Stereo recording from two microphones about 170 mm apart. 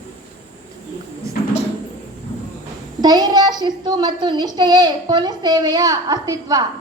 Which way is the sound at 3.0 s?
25° right (ahead or behind).